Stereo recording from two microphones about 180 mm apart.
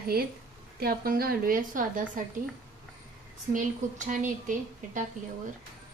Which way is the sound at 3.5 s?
45° right (ahead or behind).